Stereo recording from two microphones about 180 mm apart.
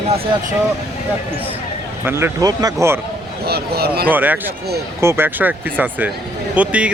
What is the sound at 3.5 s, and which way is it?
Speech, 60° right (ahead or behind).